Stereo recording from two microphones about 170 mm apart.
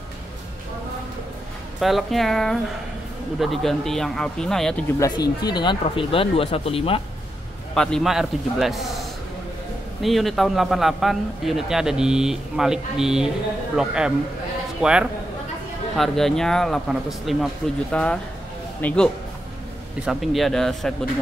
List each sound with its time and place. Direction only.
1.8 s a man's voice: centre (ahead or behind)
4.9 s speech: 20° left (ahead or behind)
7.7 s a man's voice: 5° left (ahead or behind)
10.0 s a man's voice: centre (ahead or behind)
20.1 s a man's voice: centre (ahead or behind)